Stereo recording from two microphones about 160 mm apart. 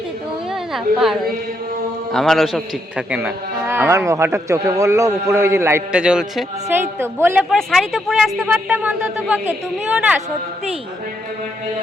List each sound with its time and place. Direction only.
0.7 s a man's voice: centre (ahead or behind)
7.5 s a man's voice: centre (ahead or behind)